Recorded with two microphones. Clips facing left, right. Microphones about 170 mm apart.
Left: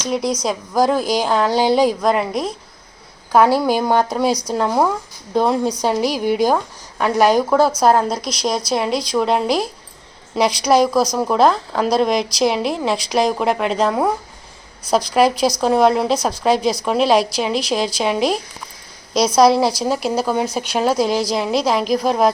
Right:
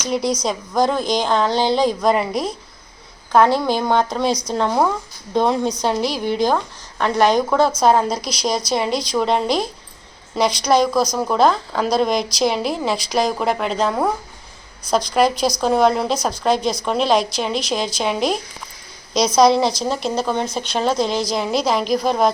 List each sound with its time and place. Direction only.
0.1 s speech: centre (ahead or behind)
4.3 s speech: 35° left (ahead or behind)
4.5 s speech: 5° left (ahead or behind)